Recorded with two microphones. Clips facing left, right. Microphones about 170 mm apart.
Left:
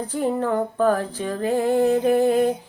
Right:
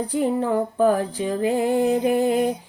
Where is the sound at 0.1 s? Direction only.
15° right (ahead or behind).